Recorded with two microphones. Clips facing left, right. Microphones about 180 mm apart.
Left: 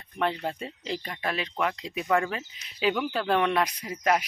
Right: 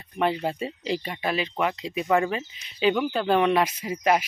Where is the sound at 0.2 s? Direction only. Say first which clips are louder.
Right 4 dB; 5° right (ahead or behind).